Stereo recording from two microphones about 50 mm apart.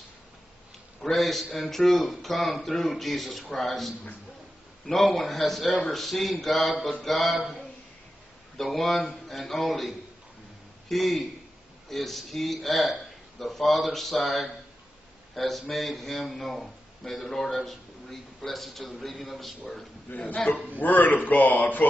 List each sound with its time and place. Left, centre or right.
1.0 s a man's voice: centre
8.5 s a man's voice: centre
20.1 s a man's voice: left